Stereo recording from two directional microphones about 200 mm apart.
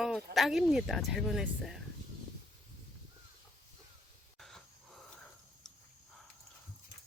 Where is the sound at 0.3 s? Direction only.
Centre (ahead or behind).